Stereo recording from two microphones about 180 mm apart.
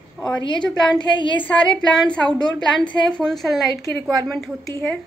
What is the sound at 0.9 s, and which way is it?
Speech, 25° left (ahead or behind).